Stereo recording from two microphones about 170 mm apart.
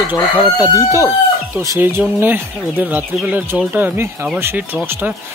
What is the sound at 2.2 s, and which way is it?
Speech, 10° right (ahead or behind).